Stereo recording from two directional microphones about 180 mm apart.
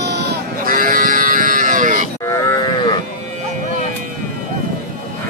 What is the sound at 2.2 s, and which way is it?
Moo, 15° left (ahead or behind).